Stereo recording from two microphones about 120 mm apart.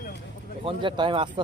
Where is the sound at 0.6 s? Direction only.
45° right (ahead or behind).